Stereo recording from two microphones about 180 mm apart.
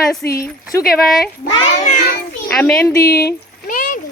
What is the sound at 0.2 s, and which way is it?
Speech, 10° left (ahead or behind).